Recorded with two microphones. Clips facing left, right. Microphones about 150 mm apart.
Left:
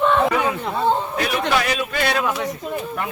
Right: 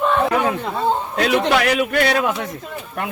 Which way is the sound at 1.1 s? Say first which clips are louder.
Right 5 dB; 75° right (ahead or behind).